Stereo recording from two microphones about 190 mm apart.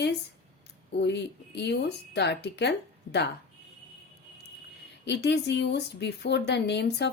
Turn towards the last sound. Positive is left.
turn(degrees=65)  # may be behind; listen again after turning